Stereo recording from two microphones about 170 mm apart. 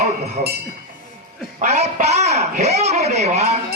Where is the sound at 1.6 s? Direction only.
40° right (ahead or behind).